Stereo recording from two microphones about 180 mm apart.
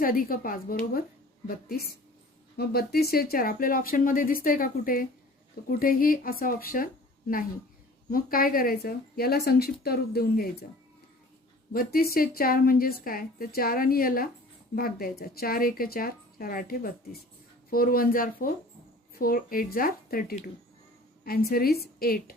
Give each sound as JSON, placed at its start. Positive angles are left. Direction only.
{"t": 0.0, "sound": "a woman's voice", "side_deg": 50}
{"t": 11.7, "sound": "a woman's voice", "side_deg": 55}